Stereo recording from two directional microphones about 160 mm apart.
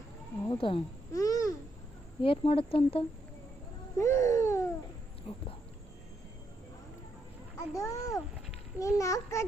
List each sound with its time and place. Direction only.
0.5 s a woman's voice: 35° left (ahead or behind)
1.1 s a child's voice: 20° left (ahead or behind)
2.2 s a woman's voice: 35° left (ahead or behind)
3.9 s a sound: 15° left (ahead or behind)
5.3 s a woman's voice: 40° left (ahead or behind)
7.7 s a child's voice: 20° left (ahead or behind)